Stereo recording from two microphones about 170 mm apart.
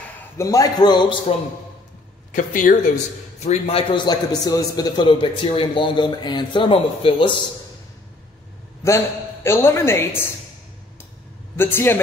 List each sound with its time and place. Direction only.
0.4 s a man's voice: 20° left (ahead or behind)
1.3 s a man's voice: 35° left (ahead or behind)
2.3 s speech: 50° left (ahead or behind)
3.3 s a man's voice: 40° left (ahead or behind)
8.8 s speech: 15° left (ahead or behind)
11.5 s speech: 15° left (ahead or behind)